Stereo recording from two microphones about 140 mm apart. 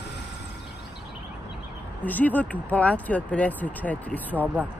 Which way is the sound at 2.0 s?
10° left (ahead or behind).